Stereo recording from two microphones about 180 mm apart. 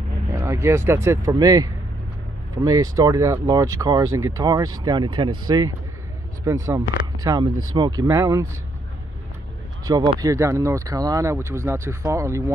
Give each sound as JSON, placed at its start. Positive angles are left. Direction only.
{"t": 0.3, "sound": "speech", "side_deg": -15}
{"t": 9.8, "sound": "speech", "side_deg": -20}